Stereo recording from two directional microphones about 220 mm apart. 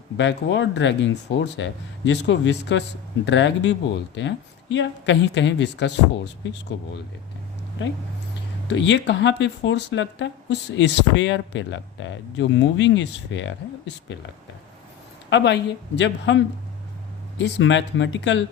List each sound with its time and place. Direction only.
0.2 s speech: 55° left (ahead or behind)
8.6 s speech: 55° left (ahead or behind)
15.3 s speech: 50° left (ahead or behind)